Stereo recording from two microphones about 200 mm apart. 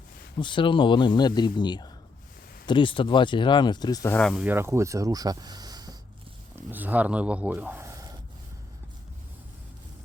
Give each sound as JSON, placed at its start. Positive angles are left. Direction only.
{"t": 0.3, "sound": "speech", "side_deg": 25}
{"t": 4.4, "sound": "speech", "side_deg": -10}
{"t": 6.7, "sound": "speech", "side_deg": -10}